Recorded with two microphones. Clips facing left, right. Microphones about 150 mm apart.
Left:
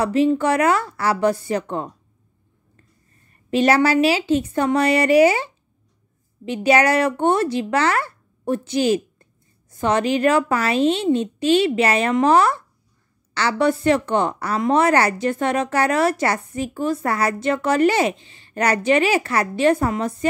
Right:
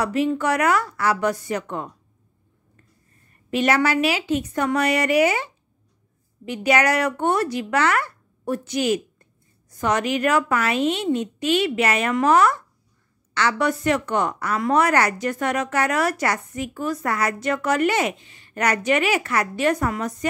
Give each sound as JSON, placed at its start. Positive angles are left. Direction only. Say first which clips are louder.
{"t": 0.0, "sound": "a woman's voice", "louder": "left 4 dB", "side_deg": 30}
{"t": 3.4, "sound": "a woman's voice", "louder": "left 4 dB", "side_deg": 30}